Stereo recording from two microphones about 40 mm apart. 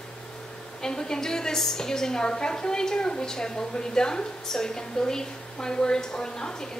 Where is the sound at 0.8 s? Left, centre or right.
Centre.